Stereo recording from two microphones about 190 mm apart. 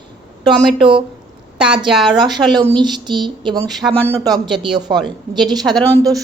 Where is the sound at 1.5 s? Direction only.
5° right (ahead or behind).